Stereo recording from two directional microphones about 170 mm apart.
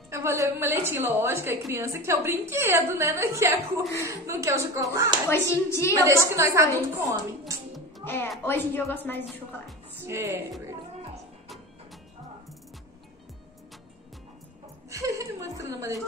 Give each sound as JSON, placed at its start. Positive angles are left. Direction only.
{"t": 0.1, "sound": "a woman's voice", "side_deg": -15}
{"t": 5.3, "sound": "speech", "side_deg": 15}
{"t": 6.0, "sound": "a woman's voice", "side_deg": -15}
{"t": 8.0, "sound": "a woman's voice", "side_deg": 10}
{"t": 10.0, "sound": "a woman's voice", "side_deg": -15}
{"t": 14.9, "sound": "chuckle", "side_deg": -20}